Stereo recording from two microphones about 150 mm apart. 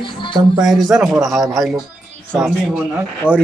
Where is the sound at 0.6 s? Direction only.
Centre (ahead or behind).